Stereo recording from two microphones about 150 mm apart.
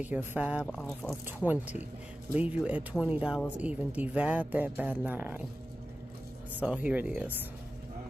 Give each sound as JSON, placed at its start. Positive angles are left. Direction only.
{"t": 0.0, "sound": "speech", "side_deg": -10}
{"t": 0.7, "sound": "speech", "side_deg": 5}
{"t": 1.2, "sound": "speech", "side_deg": -10}
{"t": 6.6, "sound": "speech", "side_deg": -10}